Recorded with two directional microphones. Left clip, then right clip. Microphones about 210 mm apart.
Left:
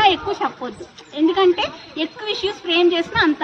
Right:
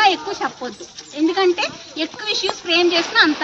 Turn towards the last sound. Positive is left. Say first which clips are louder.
# right 2 dB
turn(degrees=0)  # may be behind; listen again after turning